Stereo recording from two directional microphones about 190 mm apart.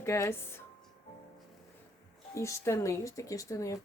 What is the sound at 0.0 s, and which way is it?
Speech, 15° left (ahead or behind).